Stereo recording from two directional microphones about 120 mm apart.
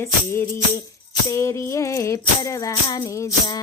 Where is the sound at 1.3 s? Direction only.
25° left (ahead or behind).